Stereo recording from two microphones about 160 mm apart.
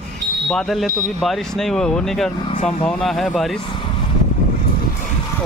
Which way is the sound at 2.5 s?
45° left (ahead or behind).